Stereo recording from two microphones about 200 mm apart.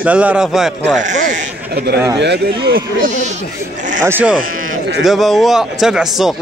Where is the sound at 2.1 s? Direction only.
55° right (ahead or behind).